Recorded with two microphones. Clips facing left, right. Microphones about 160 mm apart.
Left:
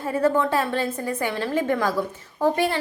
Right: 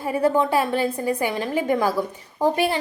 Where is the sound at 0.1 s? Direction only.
15° right (ahead or behind).